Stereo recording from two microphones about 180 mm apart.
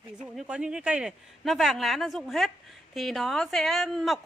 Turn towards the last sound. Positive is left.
turn(degrees=0)  # may be behind; listen again after turning